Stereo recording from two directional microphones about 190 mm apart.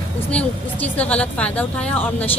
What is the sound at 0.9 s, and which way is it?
Speech, 5° left (ahead or behind).